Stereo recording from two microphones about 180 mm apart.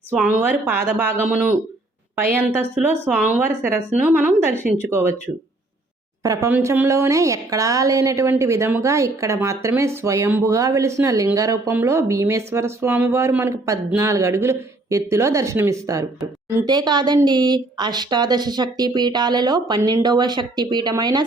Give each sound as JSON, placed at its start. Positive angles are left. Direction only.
{"t": 0.1, "sound": "a woman's voice", "side_deg": -5}
{"t": 2.3, "sound": "a woman's voice", "side_deg": -10}
{"t": 6.2, "sound": "a woman's voice", "side_deg": -20}